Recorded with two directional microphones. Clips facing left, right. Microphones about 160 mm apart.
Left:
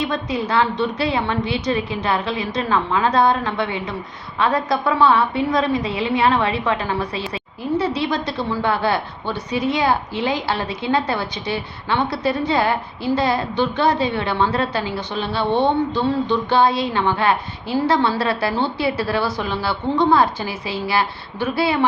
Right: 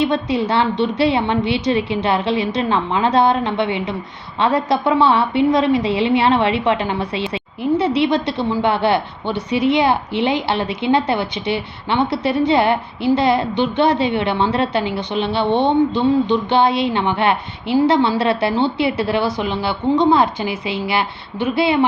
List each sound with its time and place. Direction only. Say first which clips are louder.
0.0 s a woman's voice: right 5 dB; 30° right (ahead or behind)